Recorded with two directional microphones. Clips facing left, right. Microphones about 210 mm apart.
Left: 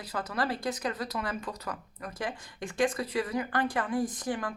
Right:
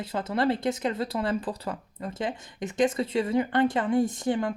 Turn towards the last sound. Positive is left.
turn(degrees=-25)  # may be behind; listen again after turning